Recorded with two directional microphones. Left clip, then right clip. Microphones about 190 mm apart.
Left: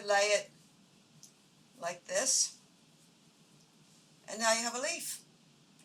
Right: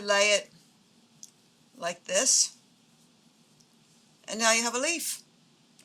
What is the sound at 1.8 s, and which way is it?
Speech, 35° right (ahead or behind).